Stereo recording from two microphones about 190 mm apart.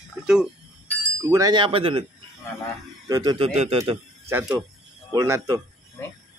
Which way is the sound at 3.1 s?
20° right (ahead or behind).